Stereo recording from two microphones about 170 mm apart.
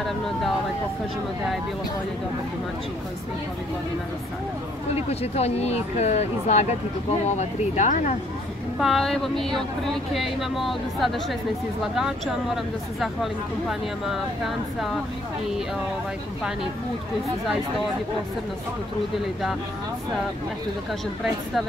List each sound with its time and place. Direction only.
5.2 s speech: 35° left (ahead or behind)
8.7 s speech: centre (ahead or behind)